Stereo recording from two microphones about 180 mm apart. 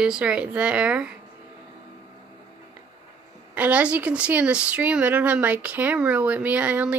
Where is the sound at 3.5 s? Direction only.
10° right (ahead or behind).